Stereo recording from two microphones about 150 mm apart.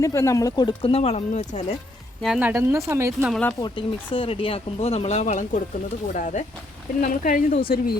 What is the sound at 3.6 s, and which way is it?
Speech, 35° left (ahead or behind).